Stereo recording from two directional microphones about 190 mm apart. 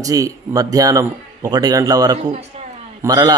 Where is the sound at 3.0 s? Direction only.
20° right (ahead or behind).